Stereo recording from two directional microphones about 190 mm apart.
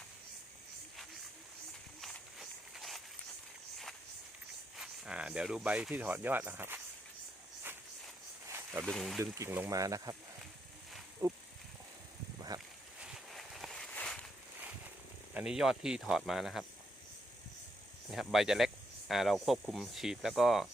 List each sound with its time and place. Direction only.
2.0 s walk: centre (ahead or behind)
4.8 s speech: 5° right (ahead or behind)
8.4 s snake: 10° right (ahead or behind)
8.9 s speech: centre (ahead or behind)
9.2 s speech: 15° right (ahead or behind)
11.2 s speech: 15° right (ahead or behind)
12.5 s a sound: 20° right (ahead or behind)
13.0 s a sound: 5° right (ahead or behind)
15.4 s speech: 5° right (ahead or behind)
18.1 s speech: centre (ahead or behind)